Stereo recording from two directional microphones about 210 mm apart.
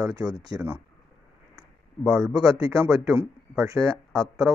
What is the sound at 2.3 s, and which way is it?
Speech, 15° right (ahead or behind).